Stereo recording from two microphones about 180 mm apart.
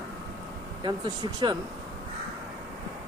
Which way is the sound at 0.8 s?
25° right (ahead or behind).